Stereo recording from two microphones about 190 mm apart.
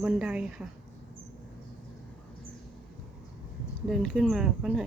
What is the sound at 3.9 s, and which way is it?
Speech, centre (ahead or behind).